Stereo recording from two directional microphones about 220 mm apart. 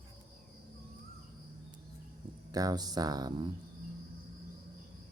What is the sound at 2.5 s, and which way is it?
Speech, 15° right (ahead or behind).